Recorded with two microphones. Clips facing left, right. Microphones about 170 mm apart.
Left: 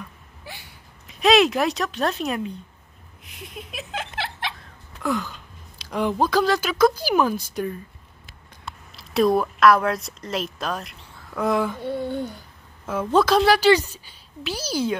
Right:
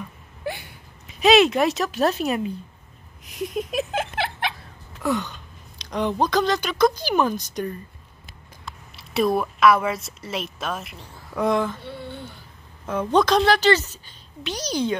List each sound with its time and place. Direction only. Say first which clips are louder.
1.0 s speech: right 1 dB; centre (ahead or behind)
3.3 s a sound: right 12 dB; 45° right (ahead or behind)
4.6 s hiccup: right 1 dB; centre (ahead or behind)
5.8 s a woman's voice: left 1 dB; 5° left (ahead or behind)
8.9 s a woman's voice: left 2 dB; centre (ahead or behind)
11.8 s speech: left 9 dB; 45° left (ahead or behind)
12.8 s a woman's voice: even; 5° left (ahead or behind)